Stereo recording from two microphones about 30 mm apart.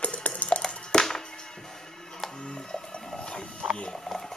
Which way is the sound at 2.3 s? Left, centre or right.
Left.